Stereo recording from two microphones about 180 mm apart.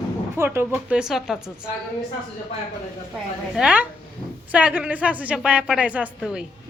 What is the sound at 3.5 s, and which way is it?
A woman's voice, 5° right (ahead or behind).